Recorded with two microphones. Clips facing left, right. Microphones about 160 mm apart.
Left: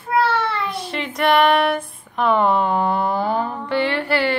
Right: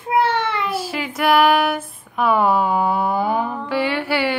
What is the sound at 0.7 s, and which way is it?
Child singing, 5° right (ahead or behind).